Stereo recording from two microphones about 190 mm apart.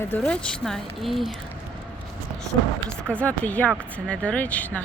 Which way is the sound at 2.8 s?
5° left (ahead or behind).